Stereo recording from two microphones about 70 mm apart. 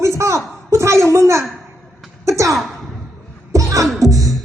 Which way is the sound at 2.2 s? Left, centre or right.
Right.